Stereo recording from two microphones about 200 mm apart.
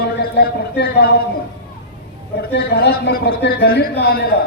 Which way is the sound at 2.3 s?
50° left (ahead or behind).